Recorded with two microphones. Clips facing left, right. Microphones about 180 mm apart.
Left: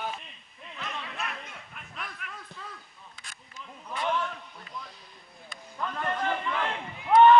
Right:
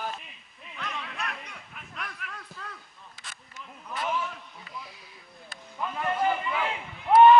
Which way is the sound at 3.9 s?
5° right (ahead or behind).